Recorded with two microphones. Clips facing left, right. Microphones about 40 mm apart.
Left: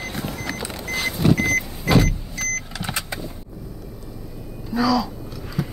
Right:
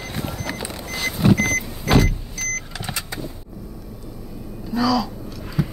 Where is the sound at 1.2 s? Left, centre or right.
Centre.